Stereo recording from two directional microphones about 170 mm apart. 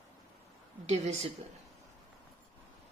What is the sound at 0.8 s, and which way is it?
Speech, 40° right (ahead or behind).